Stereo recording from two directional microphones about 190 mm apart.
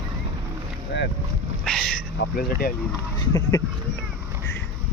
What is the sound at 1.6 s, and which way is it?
Speech, 5° left (ahead or behind).